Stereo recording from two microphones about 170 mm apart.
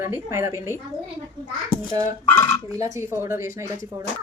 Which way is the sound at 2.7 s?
20° right (ahead or behind).